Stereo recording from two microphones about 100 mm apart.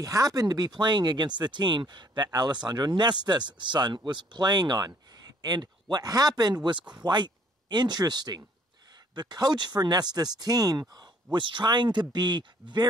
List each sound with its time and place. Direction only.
0.0 s speech: 35° right (ahead or behind)
11.3 s speech: 50° right (ahead or behind)